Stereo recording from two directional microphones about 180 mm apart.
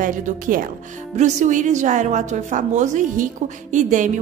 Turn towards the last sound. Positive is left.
turn(degrees=-45)  # may be behind; listen again after turning